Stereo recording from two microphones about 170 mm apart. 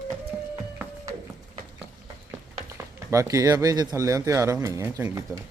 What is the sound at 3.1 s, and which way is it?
Speech, 20° right (ahead or behind).